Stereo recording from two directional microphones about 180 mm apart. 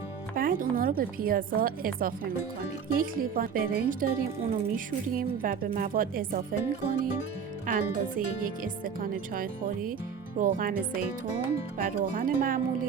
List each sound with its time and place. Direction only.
0.3 s speech: 50° right (ahead or behind)